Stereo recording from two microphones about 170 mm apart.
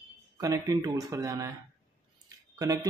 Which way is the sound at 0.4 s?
20° right (ahead or behind).